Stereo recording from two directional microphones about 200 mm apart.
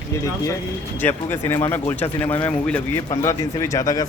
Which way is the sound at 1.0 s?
10° left (ahead or behind).